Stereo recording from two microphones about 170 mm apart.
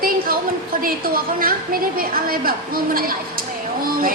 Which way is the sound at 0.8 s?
60° right (ahead or behind).